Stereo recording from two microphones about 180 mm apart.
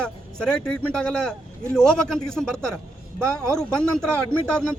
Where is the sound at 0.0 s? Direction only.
5° left (ahead or behind).